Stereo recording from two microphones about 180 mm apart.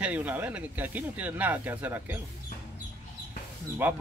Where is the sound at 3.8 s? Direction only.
10° right (ahead or behind).